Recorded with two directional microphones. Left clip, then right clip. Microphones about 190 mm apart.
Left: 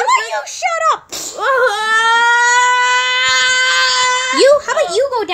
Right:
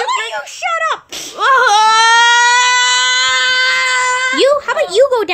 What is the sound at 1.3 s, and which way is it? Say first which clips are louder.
Baby cry: right 4 dB; 40° right (ahead or behind).